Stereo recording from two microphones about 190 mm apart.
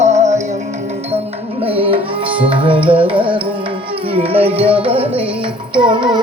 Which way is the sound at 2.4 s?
25° right (ahead or behind).